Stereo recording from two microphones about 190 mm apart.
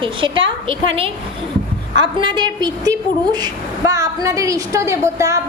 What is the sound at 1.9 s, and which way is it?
A woman's voice, 25° right (ahead or behind).